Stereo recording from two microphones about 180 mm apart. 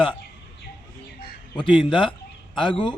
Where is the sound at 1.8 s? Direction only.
25° left (ahead or behind).